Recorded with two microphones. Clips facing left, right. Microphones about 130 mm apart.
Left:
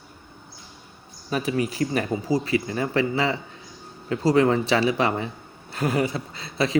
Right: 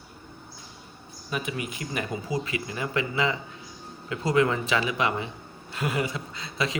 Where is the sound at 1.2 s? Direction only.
35° left (ahead or behind).